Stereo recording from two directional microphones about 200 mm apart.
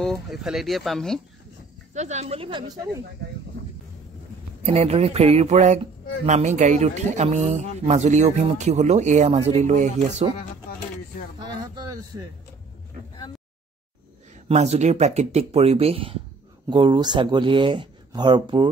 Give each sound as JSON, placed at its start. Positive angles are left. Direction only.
{"t": 0.0, "sound": "speech", "side_deg": 0}
{"t": 2.0, "sound": "speech", "side_deg": -35}
{"t": 4.6, "sound": "speech", "side_deg": -30}
{"t": 11.3, "sound": "speech", "side_deg": -20}
{"t": 14.5, "sound": "speech", "side_deg": -35}